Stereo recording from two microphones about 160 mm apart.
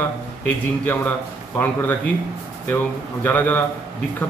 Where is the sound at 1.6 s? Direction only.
10° left (ahead or behind).